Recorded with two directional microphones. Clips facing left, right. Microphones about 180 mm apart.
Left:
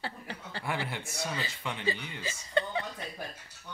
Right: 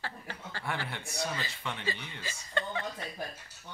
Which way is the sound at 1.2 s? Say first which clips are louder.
Even; 5° left (ahead or behind).